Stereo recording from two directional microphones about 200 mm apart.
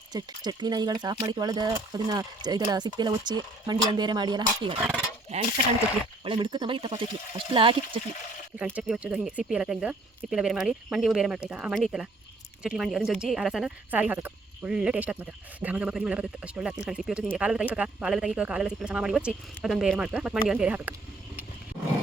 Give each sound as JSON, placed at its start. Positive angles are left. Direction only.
{"t": 0.1, "sound": "speech", "side_deg": -20}
{"t": 5.3, "sound": "speech", "side_deg": -35}
{"t": 8.5, "sound": "speech", "side_deg": -5}